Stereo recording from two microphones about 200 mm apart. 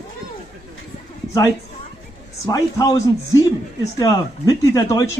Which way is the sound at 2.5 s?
15° left (ahead or behind).